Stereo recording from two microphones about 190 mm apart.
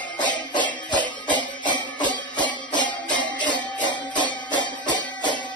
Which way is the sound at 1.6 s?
25° left (ahead or behind).